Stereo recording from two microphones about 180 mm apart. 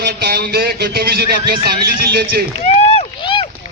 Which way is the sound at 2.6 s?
35° left (ahead or behind).